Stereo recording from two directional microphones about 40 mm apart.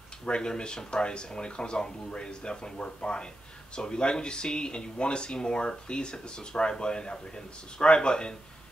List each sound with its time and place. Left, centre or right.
0.2 s speech: centre